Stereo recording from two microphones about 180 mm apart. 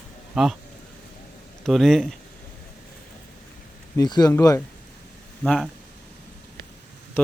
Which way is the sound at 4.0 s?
20° left (ahead or behind).